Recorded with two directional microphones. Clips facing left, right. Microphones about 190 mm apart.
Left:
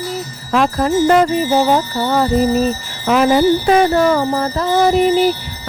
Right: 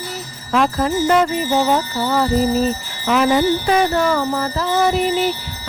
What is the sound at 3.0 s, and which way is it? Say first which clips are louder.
Speech: left 3 dB; 40° left (ahead or behind).